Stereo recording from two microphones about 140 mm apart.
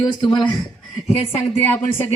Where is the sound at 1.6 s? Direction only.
15° left (ahead or behind).